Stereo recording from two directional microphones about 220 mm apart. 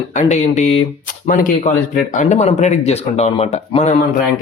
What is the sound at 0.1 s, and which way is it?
Speech, 35° left (ahead or behind).